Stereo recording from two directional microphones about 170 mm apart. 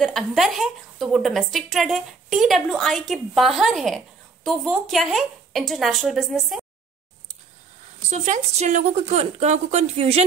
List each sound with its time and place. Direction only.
0.0 s a woman's voice: centre (ahead or behind)
8.1 s speech: 40° right (ahead or behind)